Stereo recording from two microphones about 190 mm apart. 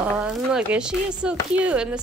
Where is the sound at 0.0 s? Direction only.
5° right (ahead or behind).